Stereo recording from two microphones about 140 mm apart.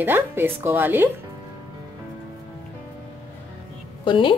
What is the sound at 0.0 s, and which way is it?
Speech, 15° right (ahead or behind).